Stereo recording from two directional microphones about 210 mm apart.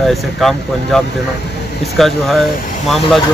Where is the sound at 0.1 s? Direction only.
Centre (ahead or behind).